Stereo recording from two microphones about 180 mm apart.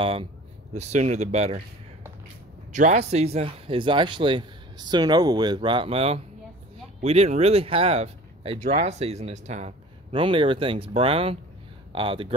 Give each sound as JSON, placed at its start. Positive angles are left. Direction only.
{"t": 0.0, "sound": "speech", "side_deg": -30}
{"t": 2.7, "sound": "speech", "side_deg": -40}